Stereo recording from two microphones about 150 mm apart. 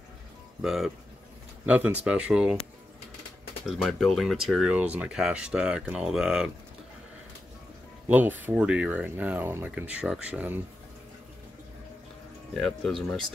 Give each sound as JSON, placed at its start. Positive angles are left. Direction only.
{"t": 0.6, "sound": "speech", "side_deg": 0}
{"t": 3.8, "sound": "speech", "side_deg": 0}
{"t": 8.1, "sound": "speech", "side_deg": -10}
{"t": 12.5, "sound": "speech", "side_deg": 5}